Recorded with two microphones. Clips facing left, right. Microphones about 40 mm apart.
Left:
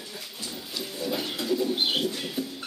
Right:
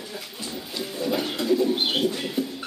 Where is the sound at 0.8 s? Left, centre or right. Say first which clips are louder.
Right 4 dB; centre.